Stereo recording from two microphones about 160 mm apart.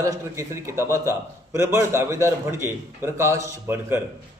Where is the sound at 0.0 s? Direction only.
20° right (ahead or behind).